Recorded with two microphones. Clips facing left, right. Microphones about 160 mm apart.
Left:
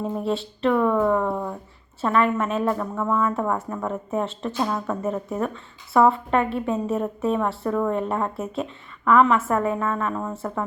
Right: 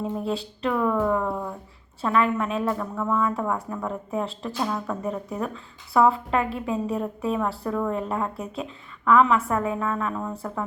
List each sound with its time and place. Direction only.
0.2 s a woman's voice: centre (ahead or behind)